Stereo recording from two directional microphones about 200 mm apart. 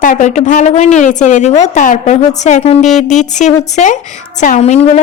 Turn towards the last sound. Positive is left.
turn(degrees=35)  # may be behind; listen again after turning